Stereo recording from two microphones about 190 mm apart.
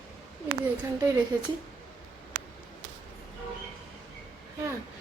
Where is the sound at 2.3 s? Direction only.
45° right (ahead or behind).